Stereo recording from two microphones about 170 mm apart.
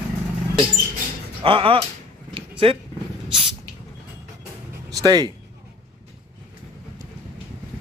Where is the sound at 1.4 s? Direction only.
30° right (ahead or behind).